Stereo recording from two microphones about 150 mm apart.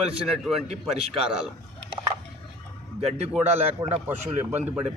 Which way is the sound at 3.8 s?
15° right (ahead or behind).